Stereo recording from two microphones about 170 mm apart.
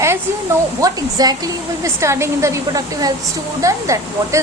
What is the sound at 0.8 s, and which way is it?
Speech, 20° right (ahead or behind).